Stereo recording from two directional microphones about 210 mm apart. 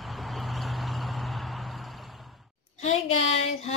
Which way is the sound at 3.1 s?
30° left (ahead or behind).